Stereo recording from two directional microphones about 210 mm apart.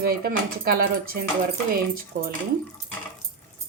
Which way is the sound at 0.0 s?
45° right (ahead or behind).